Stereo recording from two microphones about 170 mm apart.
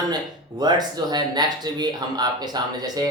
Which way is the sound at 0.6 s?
25° right (ahead or behind).